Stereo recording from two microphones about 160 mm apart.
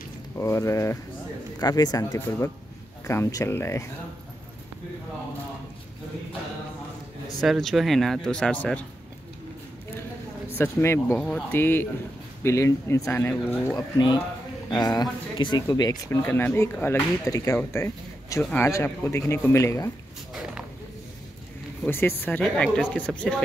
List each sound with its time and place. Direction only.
0.4 s speech: 20° left (ahead or behind)
2.1 s speech: 15° left (ahead or behind)
7.3 s speech: centre (ahead or behind)
10.6 s speech: 15° left (ahead or behind)
13.7 s speech: 25° left (ahead or behind)
16.2 s speech: 10° left (ahead or behind)
18.4 s speech: 10° left (ahead or behind)
21.8 s speech: 15° left (ahead or behind)